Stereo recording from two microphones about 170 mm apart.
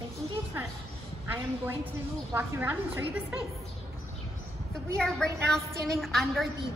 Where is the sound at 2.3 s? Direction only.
10° right (ahead or behind).